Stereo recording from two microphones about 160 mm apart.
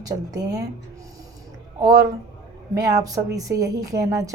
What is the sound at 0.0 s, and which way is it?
Speech, 25° right (ahead or behind).